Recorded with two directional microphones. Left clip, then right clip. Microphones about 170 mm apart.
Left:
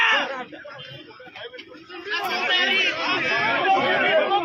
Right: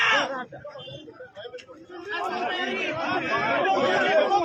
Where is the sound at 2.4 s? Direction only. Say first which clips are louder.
Left 7 dB; 45° right (ahead or behind); by 3.7 s 70° right (ahead or behind).